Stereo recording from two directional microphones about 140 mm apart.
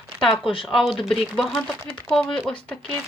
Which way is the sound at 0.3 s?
40° left (ahead or behind).